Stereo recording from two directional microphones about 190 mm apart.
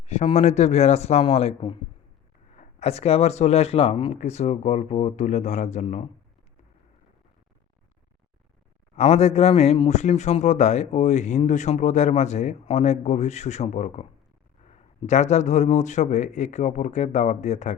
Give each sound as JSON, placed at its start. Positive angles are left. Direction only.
{"t": 0.0, "sound": "speech", "side_deg": 35}
{"t": 9.0, "sound": "speech", "side_deg": 35}